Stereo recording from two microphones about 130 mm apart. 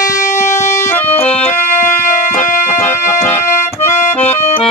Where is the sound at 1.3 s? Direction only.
60° left (ahead or behind).